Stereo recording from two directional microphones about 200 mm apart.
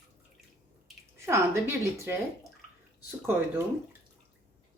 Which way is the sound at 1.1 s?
15° right (ahead or behind).